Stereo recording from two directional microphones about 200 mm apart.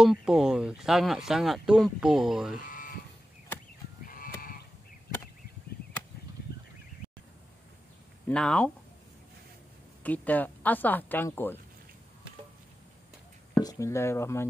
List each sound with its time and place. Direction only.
0.0 s speech: 5° right (ahead or behind)
2.6 s a sound: 40° left (ahead or behind)
4.0 s livestock: 45° left (ahead or behind)
8.3 s speech: 5° left (ahead or behind)
10.0 s speech: 10° left (ahead or behind)
13.6 s speech: 15° left (ahead or behind)